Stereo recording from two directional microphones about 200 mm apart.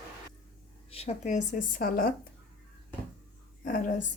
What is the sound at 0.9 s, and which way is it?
Speech, 30° left (ahead or behind).